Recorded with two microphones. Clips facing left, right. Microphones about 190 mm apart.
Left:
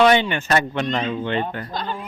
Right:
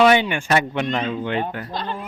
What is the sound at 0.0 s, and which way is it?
Speech, 10° right (ahead or behind).